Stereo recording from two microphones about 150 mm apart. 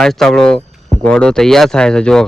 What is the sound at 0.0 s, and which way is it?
A man's voice, 5° left (ahead or behind).